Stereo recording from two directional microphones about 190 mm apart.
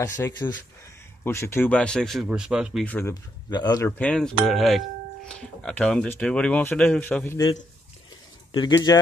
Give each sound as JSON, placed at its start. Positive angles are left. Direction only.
{"t": 0.0, "sound": "speech", "side_deg": 15}
{"t": 4.0, "sound": "speech", "side_deg": 5}
{"t": 8.5, "sound": "speech", "side_deg": 25}